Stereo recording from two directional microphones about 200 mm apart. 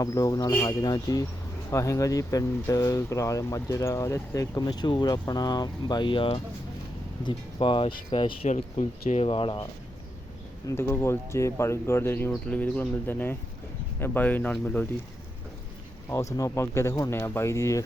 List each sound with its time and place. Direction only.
0.0 s speech: 15° left (ahead or behind)
8.5 s speech: 40° left (ahead or behind)
10.7 s speech: 10° left (ahead or behind)
16.0 s speech: 15° left (ahead or behind)